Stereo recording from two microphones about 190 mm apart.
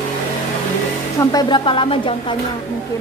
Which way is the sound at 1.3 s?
25° left (ahead or behind).